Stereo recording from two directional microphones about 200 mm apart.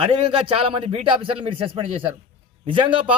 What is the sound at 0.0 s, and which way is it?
A man's voice, 25° right (ahead or behind).